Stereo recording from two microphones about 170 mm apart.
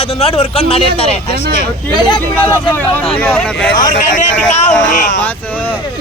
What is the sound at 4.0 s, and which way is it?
A man's voice, 50° left (ahead or behind).